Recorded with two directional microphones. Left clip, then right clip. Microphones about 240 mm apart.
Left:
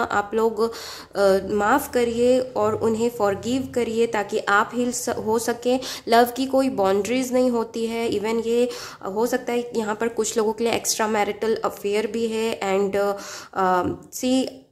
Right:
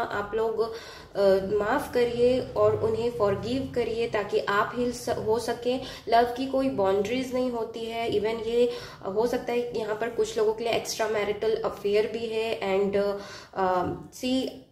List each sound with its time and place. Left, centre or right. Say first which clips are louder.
0.0 s speech: left 6 dB; left